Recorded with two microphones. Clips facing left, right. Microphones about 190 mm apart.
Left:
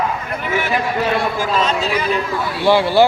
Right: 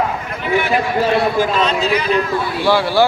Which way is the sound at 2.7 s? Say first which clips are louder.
Left 2 dB; 20° left (ahead or behind).